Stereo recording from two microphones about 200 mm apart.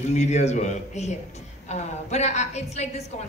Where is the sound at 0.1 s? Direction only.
35° left (ahead or behind).